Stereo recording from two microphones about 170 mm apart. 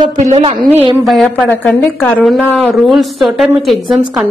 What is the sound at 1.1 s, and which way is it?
A woman's voice, centre (ahead or behind).